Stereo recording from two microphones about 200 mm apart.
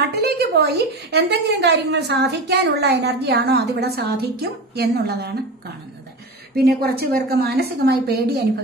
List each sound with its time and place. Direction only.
0.1 s a woman's voice: 50° right (ahead or behind)
6.5 s a woman's voice: 50° right (ahead or behind)